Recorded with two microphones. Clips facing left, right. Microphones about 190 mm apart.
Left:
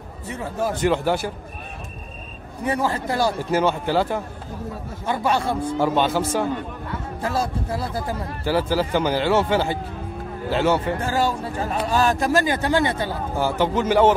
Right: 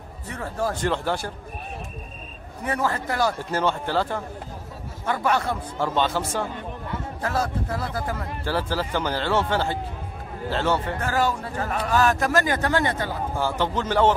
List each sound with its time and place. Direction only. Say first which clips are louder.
0.3 s speech: left 2 dB; 20° left (ahead or behind)
0.7 s a man's voice: left 5 dB; 10° left (ahead or behind)
2.6 s speech: left 3 dB; 25° left (ahead or behind)
3.3 s a man's voice: left 4 dB; 10° left (ahead or behind)
5.0 s speech: left 1 dB; 25° left (ahead or behind)
5.8 s a man's voice: left 3 dB; 10° left (ahead or behind)
7.4 s a man's voice: left 2 dB; 10° left (ahead or behind)
11.0 s speech: left 2 dB; 30° left (ahead or behind)
13.4 s a man's voice: left 5 dB; 10° left (ahead or behind)